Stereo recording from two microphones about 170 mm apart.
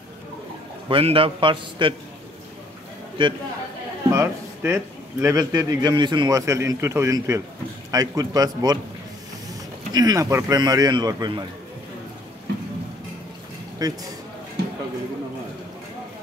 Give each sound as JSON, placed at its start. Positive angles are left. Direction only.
{"t": 0.8, "sound": "a man's voice", "side_deg": -30}
{"t": 3.2, "sound": "a man's voice", "side_deg": -30}
{"t": 4.1, "sound": "a man's voice", "side_deg": -15}
{"t": 13.8, "sound": "a man's voice", "side_deg": -20}